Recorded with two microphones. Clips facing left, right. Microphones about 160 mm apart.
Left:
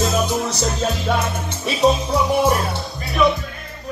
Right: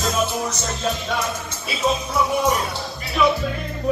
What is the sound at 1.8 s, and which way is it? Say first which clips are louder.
Music: left 6 dB; 35° left (ahead or behind).